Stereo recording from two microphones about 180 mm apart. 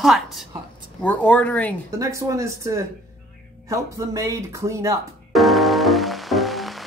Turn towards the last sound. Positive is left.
turn(degrees=0)  # may be behind; listen again after turning